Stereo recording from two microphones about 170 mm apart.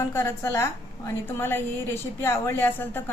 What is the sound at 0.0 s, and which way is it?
A woman's voice, 15° left (ahead or behind).